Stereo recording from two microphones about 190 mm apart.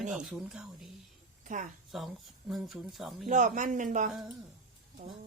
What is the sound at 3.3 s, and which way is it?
Speech, 40° right (ahead or behind).